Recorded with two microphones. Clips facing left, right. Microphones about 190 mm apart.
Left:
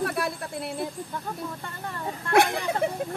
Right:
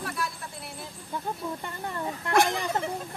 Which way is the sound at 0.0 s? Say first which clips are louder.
Left 6 dB; 60° left (ahead or behind).